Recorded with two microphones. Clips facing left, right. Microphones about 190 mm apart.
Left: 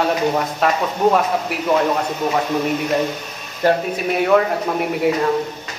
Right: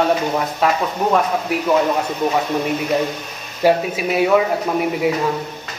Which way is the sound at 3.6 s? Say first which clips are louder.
Right 2 dB; 10° right (ahead or behind).